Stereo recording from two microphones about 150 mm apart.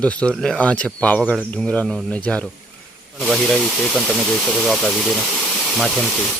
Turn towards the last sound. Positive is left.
turn(degrees=5)  # may be behind; listen again after turning